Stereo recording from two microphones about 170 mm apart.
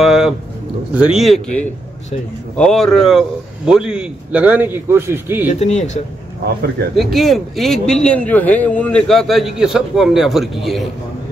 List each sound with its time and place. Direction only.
0.0 s a sound: centre (ahead or behind)
0.9 s a man's voice: 5° right (ahead or behind)
5.5 s speech: 40° left (ahead or behind)
7.0 s a man's voice: centre (ahead or behind)